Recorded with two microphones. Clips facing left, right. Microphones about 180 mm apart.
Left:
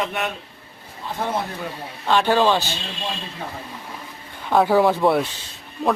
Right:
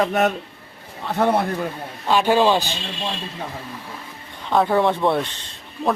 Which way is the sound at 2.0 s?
10° right (ahead or behind).